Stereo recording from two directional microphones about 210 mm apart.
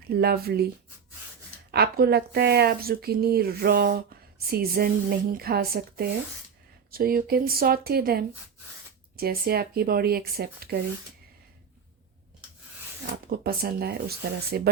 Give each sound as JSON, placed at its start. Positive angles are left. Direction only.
{"t": 0.1, "sound": "speech", "side_deg": -50}
{"t": 1.7, "sound": "speech", "side_deg": -50}
{"t": 13.3, "sound": "speech", "side_deg": -45}